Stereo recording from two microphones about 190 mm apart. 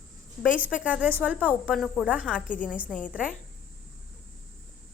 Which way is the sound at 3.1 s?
5° right (ahead or behind).